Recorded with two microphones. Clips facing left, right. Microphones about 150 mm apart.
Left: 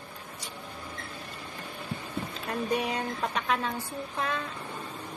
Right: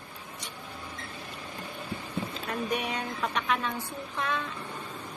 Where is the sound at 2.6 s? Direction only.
35° left (ahead or behind).